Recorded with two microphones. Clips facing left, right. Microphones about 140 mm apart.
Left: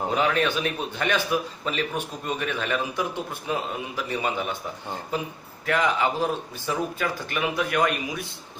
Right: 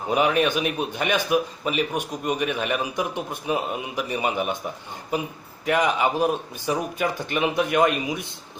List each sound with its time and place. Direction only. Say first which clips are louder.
0.1 s a man's voice: right 5 dB; 15° right (ahead or behind)